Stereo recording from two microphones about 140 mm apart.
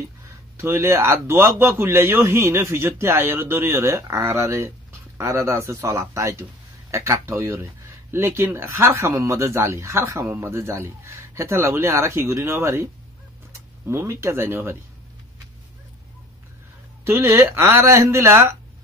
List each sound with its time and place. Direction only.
0.6 s a man's voice: 15° right (ahead or behind)
17.0 s speech: 20° right (ahead or behind)